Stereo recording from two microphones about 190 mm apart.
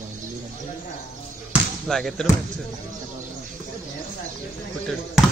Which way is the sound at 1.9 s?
Centre (ahead or behind).